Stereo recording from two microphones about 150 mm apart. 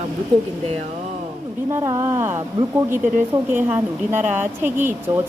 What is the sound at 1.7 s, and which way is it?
Speech, 25° right (ahead or behind).